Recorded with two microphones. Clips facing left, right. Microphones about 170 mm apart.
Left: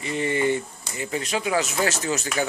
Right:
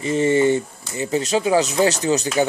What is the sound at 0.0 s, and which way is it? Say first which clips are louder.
Speech: right 7 dB; 25° right (ahead or behind).